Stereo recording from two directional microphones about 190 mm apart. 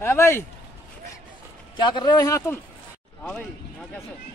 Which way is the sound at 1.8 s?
25° left (ahead or behind).